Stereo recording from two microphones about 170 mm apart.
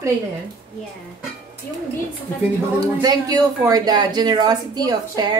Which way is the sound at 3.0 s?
20° right (ahead or behind).